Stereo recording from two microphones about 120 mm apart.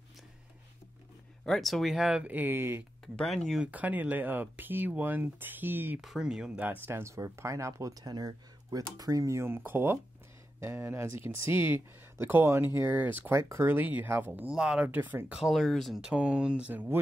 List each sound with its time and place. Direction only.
1.4 s speech: 5° left (ahead or behind); by 2.8 s 20° right (ahead or behind)
3.2 s speech: 5° left (ahead or behind)
3.6 s speech: 15° right (ahead or behind)
5.9 s speech: 5° right (ahead or behind)